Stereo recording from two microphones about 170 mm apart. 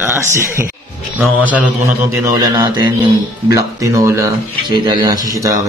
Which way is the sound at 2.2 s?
20° right (ahead or behind).